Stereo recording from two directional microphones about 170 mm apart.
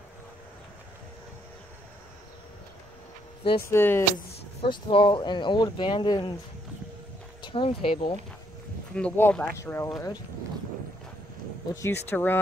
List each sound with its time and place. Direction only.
3.7 s speech: 15° left (ahead or behind)
4.6 s speech: 30° left (ahead or behind)
7.4 s speech: 30° left (ahead or behind)
8.9 s speech: 10° left (ahead or behind)
11.7 s speech: 15° left (ahead or behind)